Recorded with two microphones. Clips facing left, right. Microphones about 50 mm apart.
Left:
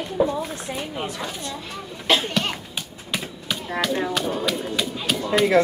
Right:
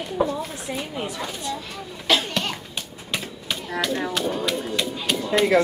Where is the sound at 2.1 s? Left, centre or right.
Left.